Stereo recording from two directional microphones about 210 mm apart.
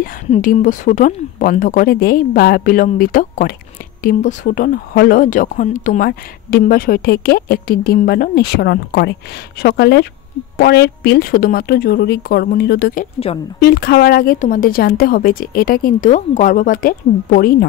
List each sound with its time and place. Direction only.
0.3 s a woman's voice: 40° left (ahead or behind)